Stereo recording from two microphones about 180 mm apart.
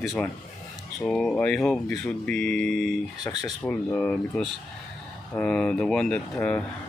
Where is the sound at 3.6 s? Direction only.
5° left (ahead or behind).